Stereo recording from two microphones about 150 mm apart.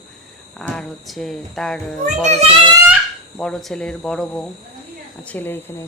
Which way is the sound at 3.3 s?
5° left (ahead or behind).